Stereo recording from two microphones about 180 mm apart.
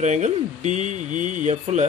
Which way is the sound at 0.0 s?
40° right (ahead or behind).